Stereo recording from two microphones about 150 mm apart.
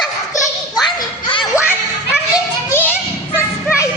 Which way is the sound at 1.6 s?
10° right (ahead or behind).